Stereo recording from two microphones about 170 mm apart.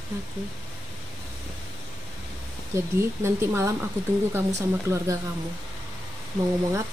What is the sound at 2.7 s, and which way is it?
A woman's voice, 15° right (ahead or behind).